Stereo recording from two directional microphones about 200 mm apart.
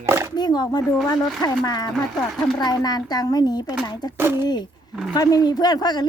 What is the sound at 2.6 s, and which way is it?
Speech, 20° left (ahead or behind).